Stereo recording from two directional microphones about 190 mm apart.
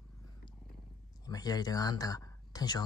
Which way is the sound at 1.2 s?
20° left (ahead or behind).